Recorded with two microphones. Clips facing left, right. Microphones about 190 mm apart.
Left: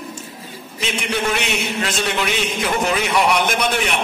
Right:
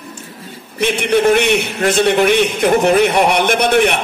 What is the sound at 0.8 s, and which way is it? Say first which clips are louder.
A man's voice: right 9 dB; 55° right (ahead or behind).